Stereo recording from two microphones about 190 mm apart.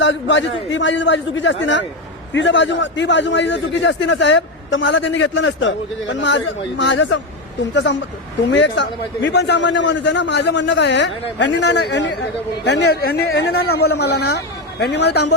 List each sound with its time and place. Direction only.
0.0 s a man's voice: 75° left (ahead or behind); by 15.2 s 60° left (ahead or behind)